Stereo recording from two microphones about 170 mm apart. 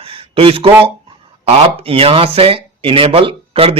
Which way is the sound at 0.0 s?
35° right (ahead or behind).